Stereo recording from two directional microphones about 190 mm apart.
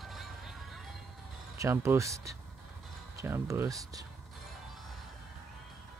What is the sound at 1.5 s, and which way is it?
Speech, 15° right (ahead or behind).